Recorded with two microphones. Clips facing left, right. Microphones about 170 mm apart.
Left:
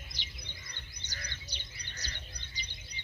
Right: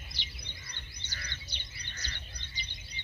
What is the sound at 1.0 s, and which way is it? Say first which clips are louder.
Chirp: even; 40° left (ahead or behind).